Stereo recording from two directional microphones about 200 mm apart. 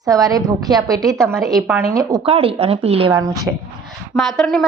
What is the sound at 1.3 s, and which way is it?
Speech, centre (ahead or behind).